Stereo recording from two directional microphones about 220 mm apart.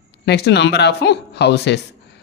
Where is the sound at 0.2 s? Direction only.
50° left (ahead or behind).